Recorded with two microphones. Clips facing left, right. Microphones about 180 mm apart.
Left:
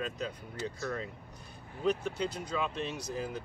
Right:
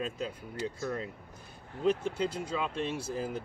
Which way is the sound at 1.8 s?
25° right (ahead or behind).